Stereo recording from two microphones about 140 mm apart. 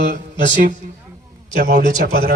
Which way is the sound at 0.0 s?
65° right (ahead or behind).